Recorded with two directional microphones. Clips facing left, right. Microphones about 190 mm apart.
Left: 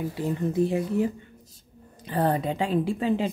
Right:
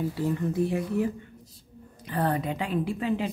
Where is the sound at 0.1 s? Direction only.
20° left (ahead or behind).